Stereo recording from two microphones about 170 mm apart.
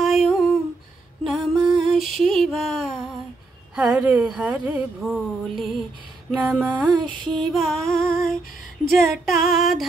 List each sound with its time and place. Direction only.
0.0 s humming: centre (ahead or behind)
1.2 s music: centre (ahead or behind)
3.7 s speech: 10° right (ahead or behind)
6.9 s female singing: 30° right (ahead or behind)
7.5 s female singing: centre (ahead or behind)